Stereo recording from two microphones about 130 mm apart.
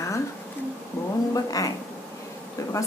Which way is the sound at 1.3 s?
25° left (ahead or behind).